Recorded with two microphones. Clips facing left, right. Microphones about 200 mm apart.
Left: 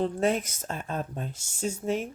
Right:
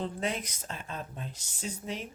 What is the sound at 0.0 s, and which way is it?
Speech, 45° left (ahead or behind).